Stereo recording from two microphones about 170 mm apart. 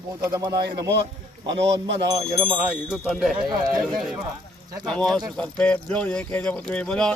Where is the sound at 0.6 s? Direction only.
80° right.